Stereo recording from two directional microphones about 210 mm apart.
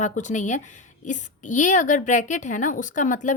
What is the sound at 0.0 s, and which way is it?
A woman's voice, 35° left (ahead or behind).